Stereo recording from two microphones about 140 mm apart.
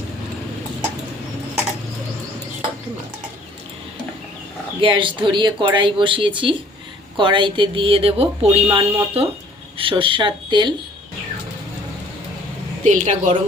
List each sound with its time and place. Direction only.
4.8 s speech: 35° right (ahead or behind)
12.8 s a woman's voice: 60° right (ahead or behind)